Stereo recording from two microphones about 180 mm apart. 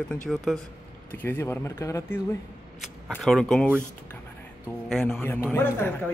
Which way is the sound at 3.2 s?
Centre (ahead or behind).